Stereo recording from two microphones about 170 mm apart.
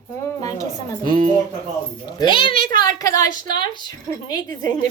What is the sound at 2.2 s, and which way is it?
A woman's voice, 30° left (ahead or behind).